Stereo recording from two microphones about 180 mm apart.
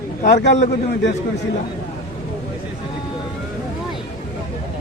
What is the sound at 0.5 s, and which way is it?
Speech, 40° left (ahead or behind).